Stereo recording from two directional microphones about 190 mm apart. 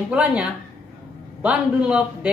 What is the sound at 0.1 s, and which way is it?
A man's voice, 5° right (ahead or behind).